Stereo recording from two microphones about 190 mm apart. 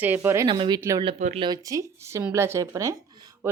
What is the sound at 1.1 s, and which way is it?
Speech, 35° right (ahead or behind).